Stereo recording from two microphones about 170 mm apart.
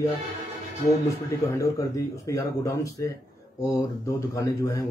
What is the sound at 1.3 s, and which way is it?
A man's voice, 20° left (ahead or behind).